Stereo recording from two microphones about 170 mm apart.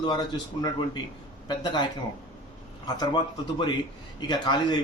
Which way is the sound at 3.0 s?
25° left (ahead or behind).